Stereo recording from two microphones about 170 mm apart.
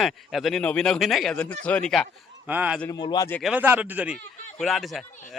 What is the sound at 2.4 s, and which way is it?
Speech, 10° right (ahead or behind).